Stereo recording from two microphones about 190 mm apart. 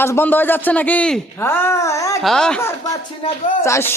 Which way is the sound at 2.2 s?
5° left (ahead or behind).